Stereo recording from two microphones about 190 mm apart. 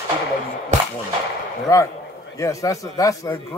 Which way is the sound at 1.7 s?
15° left (ahead or behind).